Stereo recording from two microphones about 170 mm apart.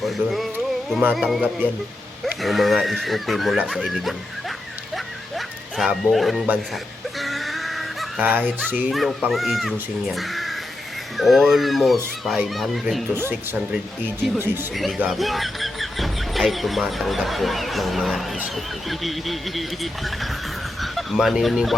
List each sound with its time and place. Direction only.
0.0 s music: centre (ahead or behind)
1.1 s speech: centre (ahead or behind)
4.9 s a sound: centre (ahead or behind)
7.2 s speech: centre (ahead or behind)
13.1 s speech: 15° right (ahead or behind)
14.7 s speech: centre (ahead or behind)